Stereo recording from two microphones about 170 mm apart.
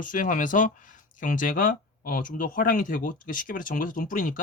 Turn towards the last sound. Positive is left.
turn(degrees=55)  # may be behind; listen again after turning